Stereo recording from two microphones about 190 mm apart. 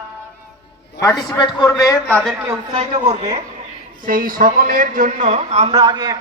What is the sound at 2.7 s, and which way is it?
A woman's voice, 40° right (ahead or behind).